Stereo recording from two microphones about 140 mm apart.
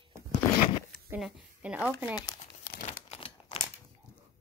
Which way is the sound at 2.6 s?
90° left.